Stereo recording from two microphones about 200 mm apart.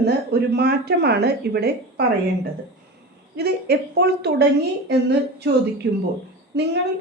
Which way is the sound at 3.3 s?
55° right (ahead or behind).